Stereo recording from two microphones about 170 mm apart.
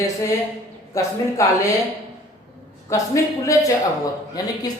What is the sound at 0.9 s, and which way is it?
Speech, 20° left (ahead or behind).